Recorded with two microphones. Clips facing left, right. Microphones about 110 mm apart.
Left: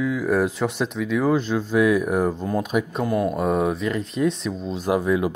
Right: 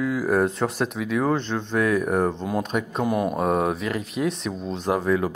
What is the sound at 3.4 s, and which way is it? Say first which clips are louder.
Speech: left 1 dB; centre (ahead or behind).